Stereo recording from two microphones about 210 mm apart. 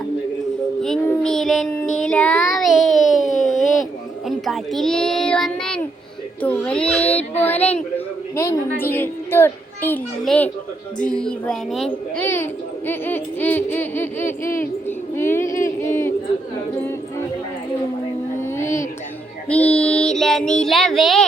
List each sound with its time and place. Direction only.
0.8 s child singing: centre (ahead or behind)
3.2 s a sound: 35° left (ahead or behind)
4.3 s child singing: centre (ahead or behind)
6.4 s a woman's voice: 5° left (ahead or behind)
11.0 s child singing: 5° left (ahead or behind)
12.1 s speech: 10° left (ahead or behind)
14.6 s child singing: 10° left (ahead or behind)
15.6 s a sound: 15° left (ahead or behind)
18.3 s music: 10° left (ahead or behind)
19.5 s child singing: 5° left (ahead or behind)